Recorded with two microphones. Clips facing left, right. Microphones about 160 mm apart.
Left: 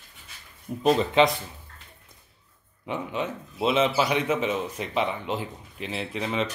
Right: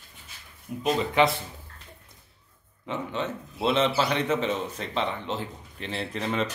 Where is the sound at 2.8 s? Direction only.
15° left (ahead or behind).